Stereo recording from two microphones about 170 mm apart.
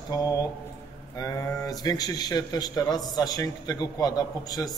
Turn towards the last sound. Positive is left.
turn(degrees=20)  # may be behind; listen again after turning